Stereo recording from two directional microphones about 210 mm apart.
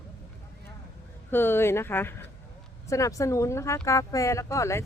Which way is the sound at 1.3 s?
10° left (ahead or behind).